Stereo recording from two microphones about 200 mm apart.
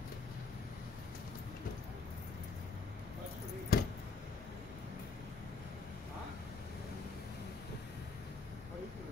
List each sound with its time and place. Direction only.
3.7 s keys jangling: 50° left (ahead or behind)